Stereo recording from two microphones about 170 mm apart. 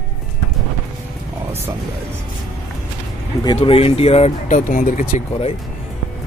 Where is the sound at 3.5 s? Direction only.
35° left (ahead or behind).